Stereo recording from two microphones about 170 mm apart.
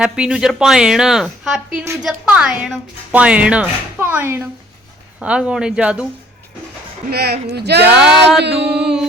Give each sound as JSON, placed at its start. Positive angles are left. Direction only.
{"t": 0.0, "sound": "speech", "side_deg": -5}
{"t": 1.8, "sound": "speech", "side_deg": -15}
{"t": 2.0, "sound": "speech", "side_deg": -5}
{"t": 7.1, "sound": "speech", "side_deg": -70}
{"t": 7.9, "sound": "speech", "side_deg": -5}
{"t": 8.4, "sound": "music", "side_deg": -80}